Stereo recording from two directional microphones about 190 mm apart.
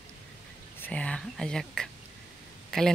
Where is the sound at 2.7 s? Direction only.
Centre (ahead or behind).